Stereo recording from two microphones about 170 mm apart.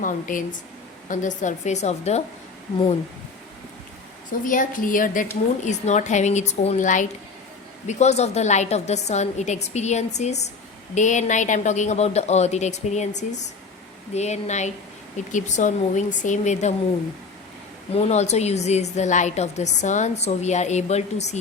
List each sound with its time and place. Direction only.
0.0 s speech: 50° left (ahead or behind)
4.3 s a woman's voice: 50° left (ahead or behind)
17.9 s a woman's voice: 40° left (ahead or behind)